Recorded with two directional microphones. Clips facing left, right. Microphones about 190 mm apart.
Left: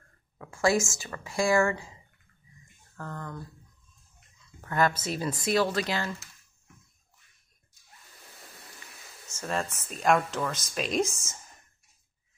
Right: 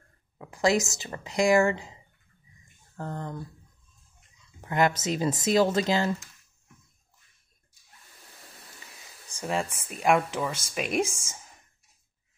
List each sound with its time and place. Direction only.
0.4 s speech: 20° right (ahead or behind)
3.0 s speech: 25° right (ahead or behind)
4.6 s a sound: 20° right (ahead or behind)
5.2 s speech: 20° right (ahead or behind)
9.3 s speech: 15° right (ahead or behind)